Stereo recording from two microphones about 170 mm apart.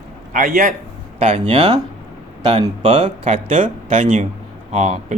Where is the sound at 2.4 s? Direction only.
30° right (ahead or behind).